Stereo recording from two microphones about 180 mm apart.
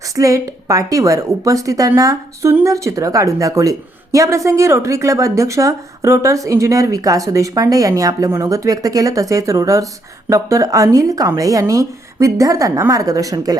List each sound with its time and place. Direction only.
0.2 s a woman's voice: 20° right (ahead or behind)